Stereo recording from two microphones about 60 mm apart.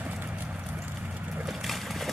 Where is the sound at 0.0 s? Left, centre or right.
Right.